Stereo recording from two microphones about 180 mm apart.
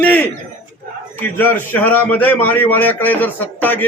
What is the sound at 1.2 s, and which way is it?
A man's voice, 10° left (ahead or behind).